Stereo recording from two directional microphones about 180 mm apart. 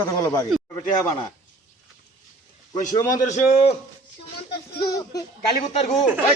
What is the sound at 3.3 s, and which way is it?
Speech, 35° left (ahead or behind).